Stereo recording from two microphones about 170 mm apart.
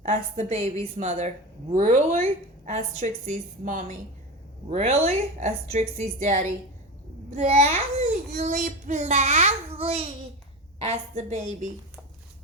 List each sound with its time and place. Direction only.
0.0 s a woman's voice: 45° right (ahead or behind)
4.7 s a woman's voice: 40° right (ahead or behind)